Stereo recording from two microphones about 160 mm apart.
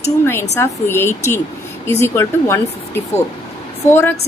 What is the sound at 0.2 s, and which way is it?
Speech, 15° left (ahead or behind).